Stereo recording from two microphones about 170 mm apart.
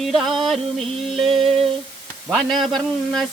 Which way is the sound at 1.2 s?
35° right (ahead or behind).